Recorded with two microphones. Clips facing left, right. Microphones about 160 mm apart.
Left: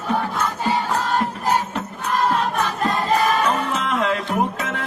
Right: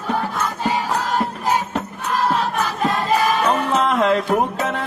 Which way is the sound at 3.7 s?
35° right (ahead or behind).